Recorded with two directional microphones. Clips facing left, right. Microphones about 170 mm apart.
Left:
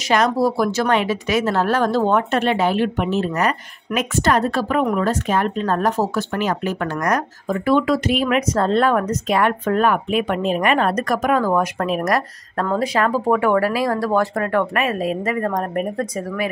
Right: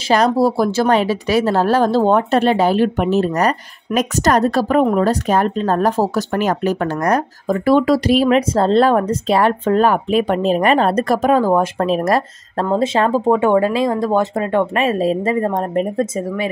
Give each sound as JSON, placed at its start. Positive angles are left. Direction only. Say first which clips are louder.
{"t": 0.1, "sound": "speech", "louder": "right 3 dB", "side_deg": -30}